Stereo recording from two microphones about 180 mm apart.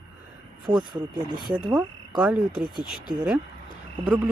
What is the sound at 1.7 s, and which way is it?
Speech, 5° right (ahead or behind).